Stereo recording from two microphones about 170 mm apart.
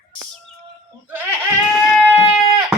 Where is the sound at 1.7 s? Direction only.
5° right (ahead or behind).